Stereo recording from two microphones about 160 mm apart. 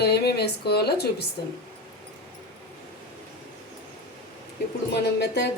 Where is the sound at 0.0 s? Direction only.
90° left.